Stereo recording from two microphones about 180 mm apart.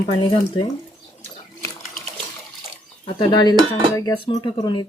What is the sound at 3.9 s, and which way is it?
Cutlery, 20° left (ahead or behind).